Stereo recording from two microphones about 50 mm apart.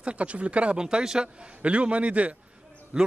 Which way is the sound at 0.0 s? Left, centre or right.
Right.